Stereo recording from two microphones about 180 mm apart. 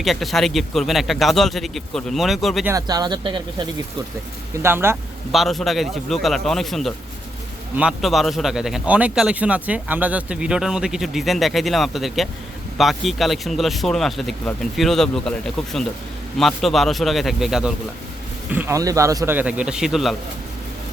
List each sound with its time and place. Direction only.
0.0 s a man's voice: centre (ahead or behind)
2.6 s speech: 20° right (ahead or behind)
4.6 s a man's voice: 15° right (ahead or behind)
5.3 s a man's voice: centre (ahead or behind)
18.5 s a man's voice: 15° right (ahead or behind)